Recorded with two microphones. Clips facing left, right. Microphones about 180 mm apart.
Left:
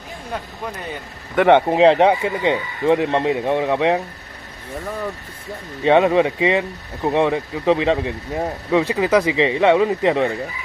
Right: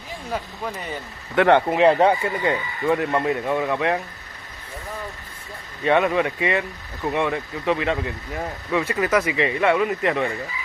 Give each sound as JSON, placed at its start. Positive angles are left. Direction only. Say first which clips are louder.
{"t": 1.3, "sound": "speech", "louder": "left 3 dB", "side_deg": 10}
{"t": 1.7, "sound": "speech", "louder": "left 3 dB", "side_deg": 25}
{"t": 5.9, "sound": "speech", "louder": "left 5 dB", "side_deg": 25}
{"t": 8.8, "sound": "speech", "louder": "left 4 dB", "side_deg": 15}